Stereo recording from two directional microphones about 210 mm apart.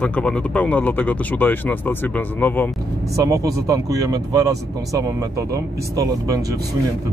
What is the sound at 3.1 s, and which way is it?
Speech, 15° right (ahead or behind).